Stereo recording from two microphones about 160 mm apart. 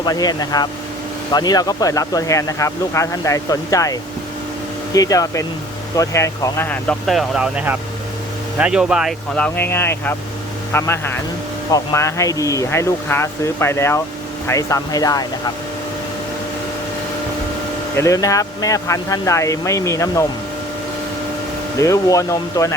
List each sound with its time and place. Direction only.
0.0 s speech: 25° left (ahead or behind)
4.9 s speech: 20° left (ahead or behind)
17.9 s speech: 20° left (ahead or behind)
21.8 s speech: 20° left (ahead or behind)